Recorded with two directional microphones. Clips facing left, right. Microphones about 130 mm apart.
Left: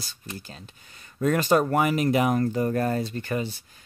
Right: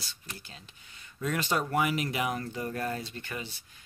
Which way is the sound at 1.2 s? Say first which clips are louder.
Left 9 dB; 45° left (ahead or behind).